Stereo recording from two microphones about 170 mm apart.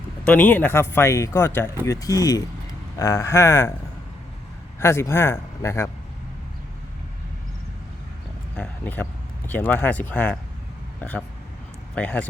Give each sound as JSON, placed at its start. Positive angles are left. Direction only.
{"t": 0.3, "sound": "speech", "side_deg": 10}
{"t": 4.8, "sound": "speech", "side_deg": 15}
{"t": 8.5, "sound": "speech", "side_deg": 10}
{"t": 11.9, "sound": "speech", "side_deg": 10}